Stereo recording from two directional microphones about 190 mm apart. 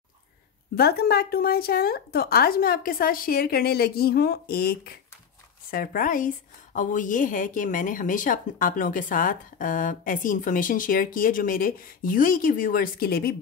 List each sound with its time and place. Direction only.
0.7 s a woman's voice: 55° left (ahead or behind)